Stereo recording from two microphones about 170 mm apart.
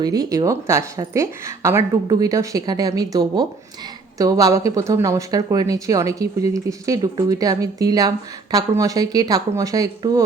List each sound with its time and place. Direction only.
0.0 s speech: 25° right (ahead or behind)